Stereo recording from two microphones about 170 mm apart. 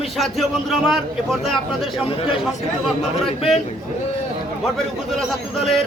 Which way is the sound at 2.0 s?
35° left (ahead or behind).